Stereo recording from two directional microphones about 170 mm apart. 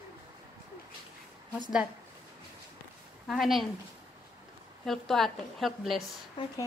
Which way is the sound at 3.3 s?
Centre (ahead or behind).